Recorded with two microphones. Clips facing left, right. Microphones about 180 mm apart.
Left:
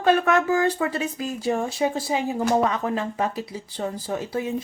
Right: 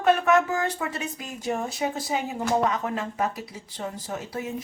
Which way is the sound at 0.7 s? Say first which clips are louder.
Left 6 dB; 35° left (ahead or behind).